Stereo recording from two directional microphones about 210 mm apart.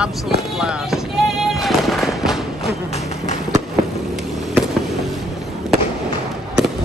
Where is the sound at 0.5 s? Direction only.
5° right (ahead or behind).